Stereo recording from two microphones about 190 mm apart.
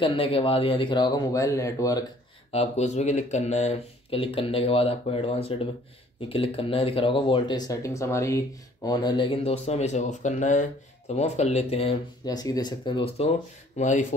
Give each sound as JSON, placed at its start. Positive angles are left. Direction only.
{"t": 0.0, "sound": "speech", "side_deg": 30}
{"t": 2.5, "sound": "speech", "side_deg": 35}
{"t": 12.3, "sound": "speech", "side_deg": 20}
{"t": 13.7, "sound": "speech", "side_deg": 40}